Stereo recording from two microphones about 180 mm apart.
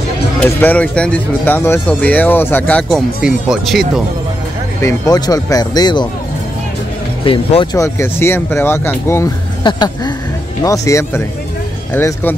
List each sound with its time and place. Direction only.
0.4 s speech: 10° left (ahead or behind)
3.2 s speech: 5° right (ahead or behind)
4.8 s speech: 20° left (ahead or behind)
7.7 s speech: 15° left (ahead or behind)